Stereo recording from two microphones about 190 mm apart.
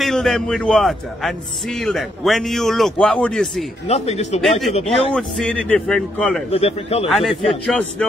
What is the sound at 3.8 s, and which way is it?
Speech, 35° left (ahead or behind).